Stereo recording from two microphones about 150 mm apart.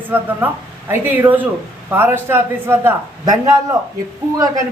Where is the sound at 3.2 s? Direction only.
25° right (ahead or behind).